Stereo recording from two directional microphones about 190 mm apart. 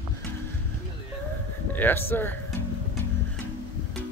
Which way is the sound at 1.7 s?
10° left (ahead or behind).